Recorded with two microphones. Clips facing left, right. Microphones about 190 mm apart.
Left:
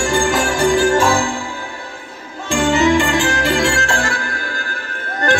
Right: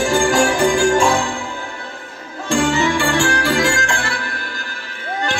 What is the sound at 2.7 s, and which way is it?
Music, 20° left (ahead or behind).